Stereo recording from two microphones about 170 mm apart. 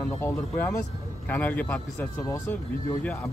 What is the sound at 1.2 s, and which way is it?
Speech, 10° left (ahead or behind).